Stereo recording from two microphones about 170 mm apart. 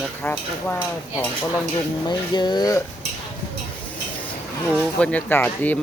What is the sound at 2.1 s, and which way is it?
Speech, 25° left (ahead or behind).